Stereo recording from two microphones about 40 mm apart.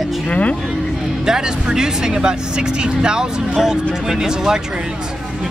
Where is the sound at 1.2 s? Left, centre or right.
Centre.